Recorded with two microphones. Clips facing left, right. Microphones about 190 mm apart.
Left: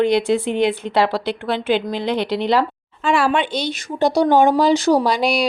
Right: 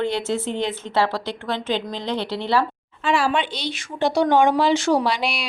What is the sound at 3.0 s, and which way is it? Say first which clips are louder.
Speech: left 3 dB; 55° left (ahead or behind).